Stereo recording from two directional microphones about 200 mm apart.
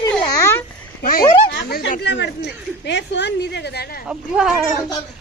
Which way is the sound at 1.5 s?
60° left (ahead or behind).